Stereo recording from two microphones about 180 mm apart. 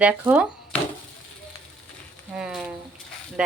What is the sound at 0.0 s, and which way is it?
Speech, 5° right (ahead or behind).